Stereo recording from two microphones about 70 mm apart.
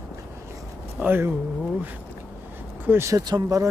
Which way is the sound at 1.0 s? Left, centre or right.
Right.